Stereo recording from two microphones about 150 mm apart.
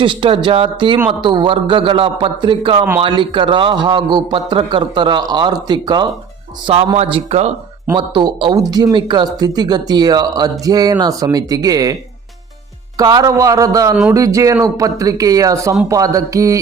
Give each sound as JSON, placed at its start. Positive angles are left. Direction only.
{"t": 0.0, "sound": "a man's voice", "side_deg": -35}
{"t": 6.9, "sound": "speech", "side_deg": -45}
{"t": 7.9, "sound": "speech", "side_deg": -30}
{"t": 13.0, "sound": "speech", "side_deg": -25}